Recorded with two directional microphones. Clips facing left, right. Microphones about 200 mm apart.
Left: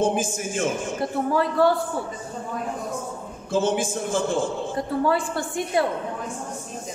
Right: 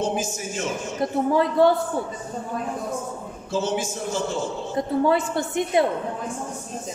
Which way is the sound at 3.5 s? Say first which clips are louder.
Left 3 dB; 50° left (ahead or behind).